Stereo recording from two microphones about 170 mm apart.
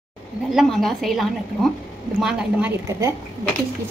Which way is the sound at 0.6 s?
Centre (ahead or behind).